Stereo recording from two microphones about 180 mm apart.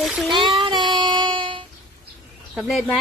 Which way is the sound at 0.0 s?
Centre (ahead or behind).